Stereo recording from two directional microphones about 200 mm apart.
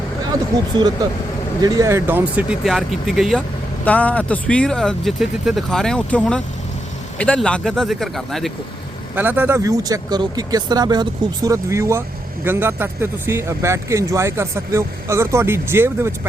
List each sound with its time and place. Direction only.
1.6 s speech: 15° right (ahead or behind); by 8.5 s centre (ahead or behind)
9.1 s speech: 10° right (ahead or behind)